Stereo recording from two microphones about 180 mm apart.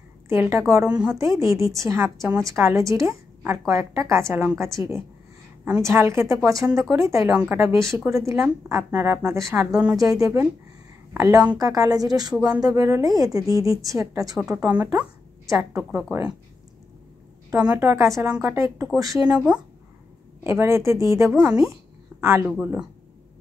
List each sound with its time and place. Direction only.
0.3 s a woman's voice: 15° right (ahead or behind)
0.8 s speech: 5° right (ahead or behind)
1.1 s a woman's voice: 15° right (ahead or behind)
4.7 s a woman's voice: 15° right (ahead or behind)
17.6 s a woman's voice: 15° right (ahead or behind)
20.4 s a woman's voice: 15° right (ahead or behind)
21.3 s a woman's voice: 5° right (ahead or behind)